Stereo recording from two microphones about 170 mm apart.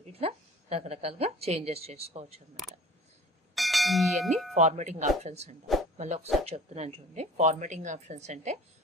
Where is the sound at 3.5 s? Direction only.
Centre (ahead or behind).